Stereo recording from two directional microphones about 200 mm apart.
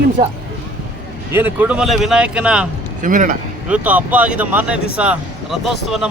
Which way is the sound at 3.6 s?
5° right (ahead or behind).